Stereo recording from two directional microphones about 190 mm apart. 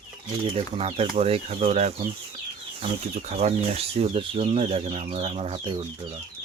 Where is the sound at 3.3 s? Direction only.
35° right (ahead or behind).